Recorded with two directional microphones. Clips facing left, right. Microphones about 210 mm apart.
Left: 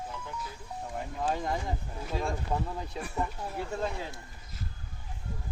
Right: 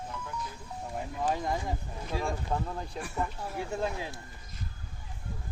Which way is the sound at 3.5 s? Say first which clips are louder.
Right 1 dB; 10° right (ahead or behind).